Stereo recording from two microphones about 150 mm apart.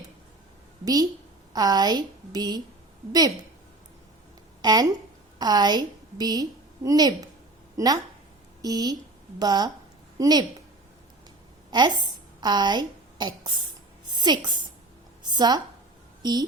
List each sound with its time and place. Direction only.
1.5 s a woman's voice: 25° right (ahead or behind)
4.6 s a woman's voice: 25° right (ahead or behind)
12.4 s a woman's voice: 30° right (ahead or behind)